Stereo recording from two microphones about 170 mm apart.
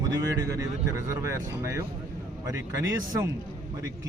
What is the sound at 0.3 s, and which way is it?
Speech, 20° right (ahead or behind).